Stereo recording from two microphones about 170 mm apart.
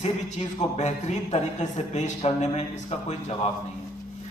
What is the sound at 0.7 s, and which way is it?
A man's voice, 45° left (ahead or behind).